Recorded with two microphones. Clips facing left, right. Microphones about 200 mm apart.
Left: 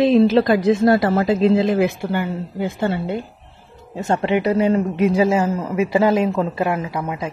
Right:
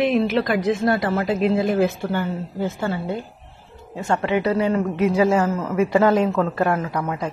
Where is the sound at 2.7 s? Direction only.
25° left (ahead or behind).